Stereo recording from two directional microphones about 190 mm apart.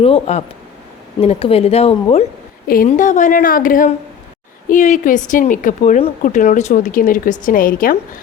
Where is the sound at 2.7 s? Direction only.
45° left (ahead or behind).